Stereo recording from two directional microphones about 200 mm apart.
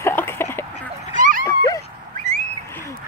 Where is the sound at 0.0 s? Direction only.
10° left (ahead or behind).